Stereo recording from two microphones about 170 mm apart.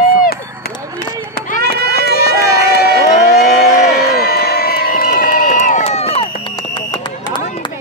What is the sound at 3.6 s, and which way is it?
Crowd, 65° left (ahead or behind).